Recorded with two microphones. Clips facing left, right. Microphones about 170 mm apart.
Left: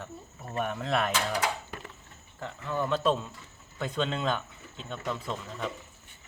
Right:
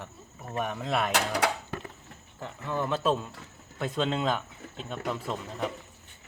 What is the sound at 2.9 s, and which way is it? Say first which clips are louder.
Speech: left 1 dB; 10° right (ahead or behind).